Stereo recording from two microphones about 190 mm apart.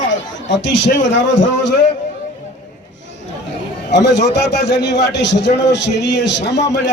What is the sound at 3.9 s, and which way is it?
A man's voice, 65° left (ahead or behind).